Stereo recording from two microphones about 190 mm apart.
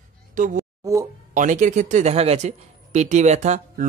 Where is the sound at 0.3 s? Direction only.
45° right (ahead or behind).